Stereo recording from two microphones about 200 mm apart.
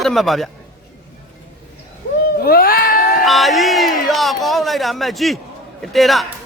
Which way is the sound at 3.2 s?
Centre (ahead or behind).